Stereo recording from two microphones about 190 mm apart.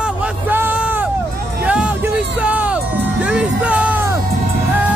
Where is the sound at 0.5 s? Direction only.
10° right (ahead or behind).